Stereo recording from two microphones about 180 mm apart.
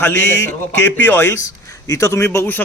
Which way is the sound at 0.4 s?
10° left (ahead or behind).